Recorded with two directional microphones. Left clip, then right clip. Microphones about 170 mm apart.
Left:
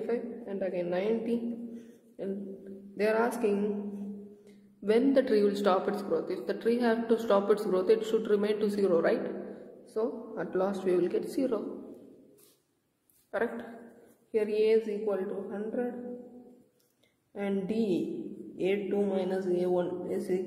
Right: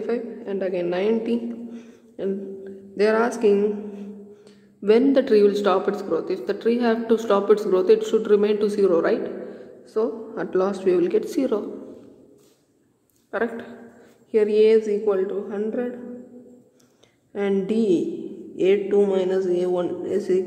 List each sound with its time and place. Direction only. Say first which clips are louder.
0.0 s a sound: right 7 dB; 25° right (ahead or behind)
3.0 s a man's voice: right 8 dB; 25° right (ahead or behind)
4.8 s a man's voice: right 8 dB; 30° right (ahead or behind)
13.3 s a man's voice: right 6 dB; 20° right (ahead or behind)
17.3 s a man's voice: right 10 dB; 25° right (ahead or behind)